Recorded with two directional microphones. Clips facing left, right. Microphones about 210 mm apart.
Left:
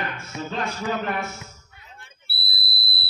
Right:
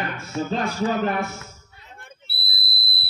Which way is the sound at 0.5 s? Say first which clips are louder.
Right 3 dB; 35° right (ahead or behind).